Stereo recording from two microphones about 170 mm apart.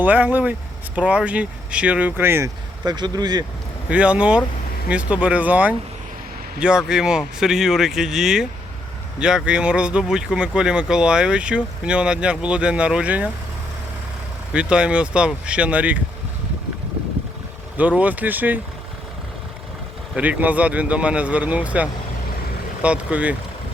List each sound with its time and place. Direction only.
0.0 s speech: 10° right (ahead or behind); by 3.4 s 25° right (ahead or behind)
3.8 s speech: 5° right (ahead or behind)
14.5 s speech: 5° right (ahead or behind)
17.7 s speech: 10° right (ahead or behind)
20.1 s speech: 10° right (ahead or behind)